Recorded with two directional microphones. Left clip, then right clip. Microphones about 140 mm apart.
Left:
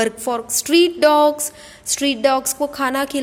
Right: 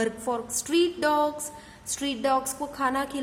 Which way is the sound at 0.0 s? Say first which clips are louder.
Left 8 dB; 35° left (ahead or behind).